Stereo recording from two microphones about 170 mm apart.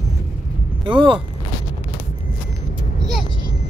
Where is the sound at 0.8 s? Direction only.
30° right (ahead or behind).